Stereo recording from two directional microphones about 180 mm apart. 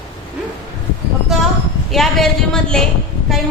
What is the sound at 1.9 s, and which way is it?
Speech, centre (ahead or behind).